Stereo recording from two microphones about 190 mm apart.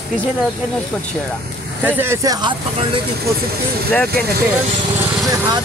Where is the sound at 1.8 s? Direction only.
10° right (ahead or behind).